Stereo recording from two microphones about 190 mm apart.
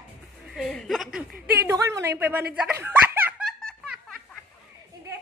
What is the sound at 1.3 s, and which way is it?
Speech, 55° right (ahead or behind).